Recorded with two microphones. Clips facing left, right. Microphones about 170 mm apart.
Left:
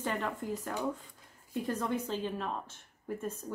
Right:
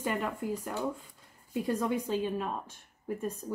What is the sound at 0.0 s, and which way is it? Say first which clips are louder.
A woman's voice: right 2 dB; 10° right (ahead or behind).